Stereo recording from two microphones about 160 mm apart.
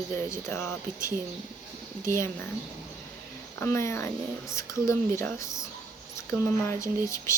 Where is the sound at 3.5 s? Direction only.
15° left (ahead or behind).